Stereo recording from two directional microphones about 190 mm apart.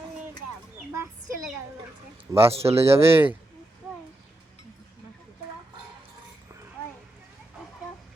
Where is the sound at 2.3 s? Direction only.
15° right (ahead or behind).